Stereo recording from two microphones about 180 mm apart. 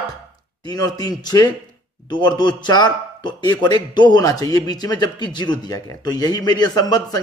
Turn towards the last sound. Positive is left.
turn(degrees=20)  # may be behind; listen again after turning